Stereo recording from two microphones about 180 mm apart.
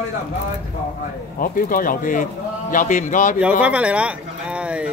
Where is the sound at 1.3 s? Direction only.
50° left (ahead or behind).